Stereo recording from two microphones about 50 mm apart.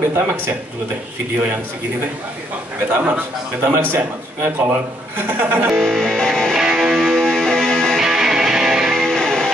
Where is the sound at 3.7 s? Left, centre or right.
Right.